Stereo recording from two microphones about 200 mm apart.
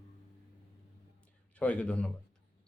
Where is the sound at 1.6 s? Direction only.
5° left (ahead or behind).